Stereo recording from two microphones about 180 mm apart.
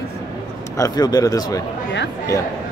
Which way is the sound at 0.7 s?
20° left (ahead or behind).